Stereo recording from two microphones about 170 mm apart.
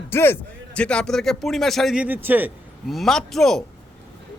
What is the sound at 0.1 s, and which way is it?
A man's voice, 15° left (ahead or behind).